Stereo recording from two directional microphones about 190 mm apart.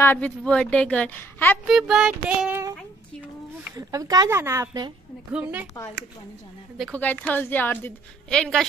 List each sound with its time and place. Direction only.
0.0 s a woman's voice: 10° left (ahead or behind)
1.7 s child singing: centre (ahead or behind)
3.7 s speech: 20° right (ahead or behind)
5.3 s speech: 5° right (ahead or behind)
7.0 s a woman's voice: 10° left (ahead or behind)